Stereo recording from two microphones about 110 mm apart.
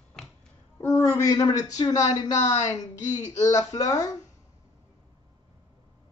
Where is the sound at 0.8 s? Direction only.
25° left (ahead or behind).